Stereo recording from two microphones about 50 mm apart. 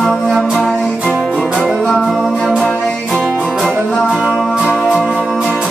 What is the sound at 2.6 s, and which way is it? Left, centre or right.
Music, centre.